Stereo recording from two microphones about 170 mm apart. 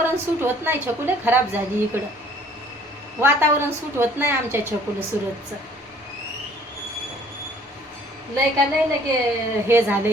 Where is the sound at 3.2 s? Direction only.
15° right (ahead or behind).